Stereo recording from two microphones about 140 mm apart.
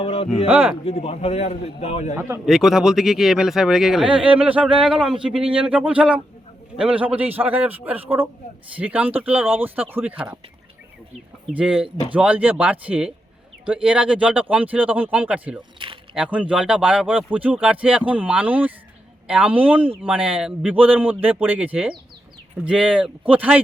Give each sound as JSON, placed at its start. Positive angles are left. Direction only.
{"t": 0.0, "sound": "speech", "side_deg": 40}
{"t": 0.4, "sound": "speech", "side_deg": -10}
{"t": 0.9, "sound": "a man's voice", "side_deg": 45}
{"t": 2.1, "sound": "speech", "side_deg": -20}
{"t": 2.5, "sound": "speech", "side_deg": 0}
{"t": 11.5, "sound": "speech", "side_deg": -5}